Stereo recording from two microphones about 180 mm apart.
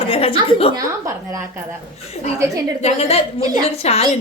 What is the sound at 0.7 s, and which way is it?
Speech, 15° right (ahead or behind).